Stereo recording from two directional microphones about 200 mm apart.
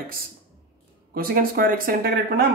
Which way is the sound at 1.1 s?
45° right (ahead or behind).